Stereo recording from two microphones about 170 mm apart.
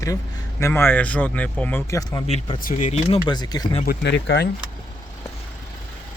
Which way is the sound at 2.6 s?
50° left (ahead or behind).